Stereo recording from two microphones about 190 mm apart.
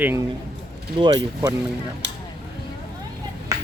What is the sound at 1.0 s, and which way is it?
Speech, 20° right (ahead or behind).